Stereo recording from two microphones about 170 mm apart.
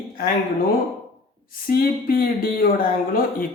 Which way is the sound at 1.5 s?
60° left (ahead or behind).